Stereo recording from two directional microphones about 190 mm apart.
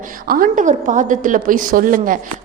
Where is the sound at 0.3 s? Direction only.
50° right (ahead or behind).